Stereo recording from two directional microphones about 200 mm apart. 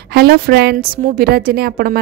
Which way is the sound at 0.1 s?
50° right (ahead or behind).